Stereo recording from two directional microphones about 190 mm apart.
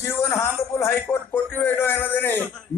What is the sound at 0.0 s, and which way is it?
A man's voice, 15° left (ahead or behind).